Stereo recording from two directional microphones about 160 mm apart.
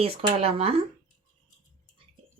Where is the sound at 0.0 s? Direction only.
35° right (ahead or behind).